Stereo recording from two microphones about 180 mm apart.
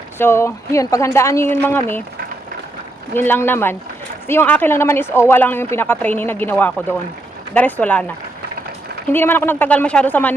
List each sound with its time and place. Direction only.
0.2 s speech: 15° left (ahead or behind)
3.2 s speech: 10° left (ahead or behind)
9.1 s speech: 10° left (ahead or behind)